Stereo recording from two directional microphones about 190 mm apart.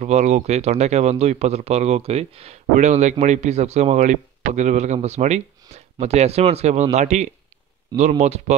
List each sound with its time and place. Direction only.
0.0 s speech: 35° right (ahead or behind)